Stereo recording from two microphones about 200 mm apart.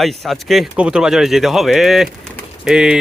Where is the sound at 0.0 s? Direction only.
Centre (ahead or behind).